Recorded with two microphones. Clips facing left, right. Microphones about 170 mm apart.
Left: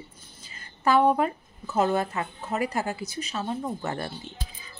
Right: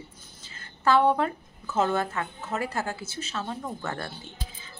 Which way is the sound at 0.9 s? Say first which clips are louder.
Left 1 dB; 5° left (ahead or behind).